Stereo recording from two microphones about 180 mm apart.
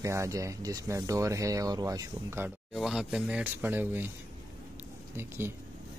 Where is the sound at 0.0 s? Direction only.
15° right (ahead or behind).